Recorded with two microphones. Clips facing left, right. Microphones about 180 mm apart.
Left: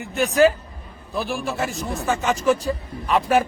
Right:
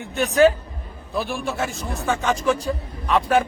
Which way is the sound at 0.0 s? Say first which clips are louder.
Right 1 dB; centre (ahead or behind).